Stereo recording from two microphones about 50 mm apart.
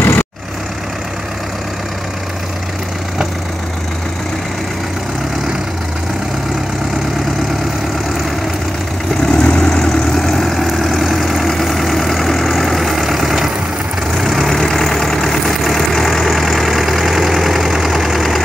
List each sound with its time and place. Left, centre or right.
0.0 s vehicle: left
9.2 s vehicle: centre